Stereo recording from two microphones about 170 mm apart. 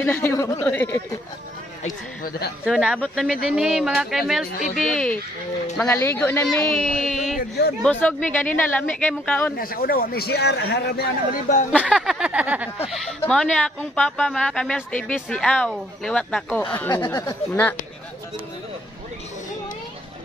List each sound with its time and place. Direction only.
0.0 s speech: 15° left (ahead or behind)
2.6 s speech: 5° right (ahead or behind)
7.3 s speech: 65° left (ahead or behind)
7.8 s speech: 10° left (ahead or behind)
9.6 s a man's voice: 60° left (ahead or behind); by 11.1 s 75° left (ahead or behind)
11.9 s a sound: 5° right (ahead or behind)
13.2 s speech: 5° left (ahead or behind)
16.9 s speech: 20° left (ahead or behind)